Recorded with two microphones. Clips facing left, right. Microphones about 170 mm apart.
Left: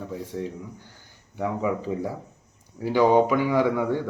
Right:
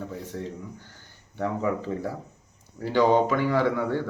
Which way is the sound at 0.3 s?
5° left (ahead or behind).